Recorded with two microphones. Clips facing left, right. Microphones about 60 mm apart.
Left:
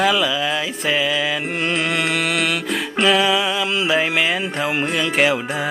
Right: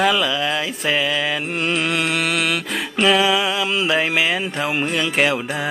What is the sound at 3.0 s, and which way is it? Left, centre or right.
Music, centre.